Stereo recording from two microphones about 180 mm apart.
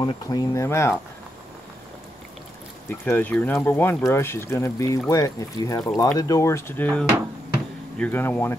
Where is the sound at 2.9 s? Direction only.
10° left (ahead or behind).